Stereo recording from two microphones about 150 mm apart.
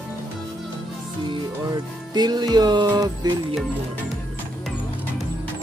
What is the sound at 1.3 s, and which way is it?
Music, 30° right (ahead or behind).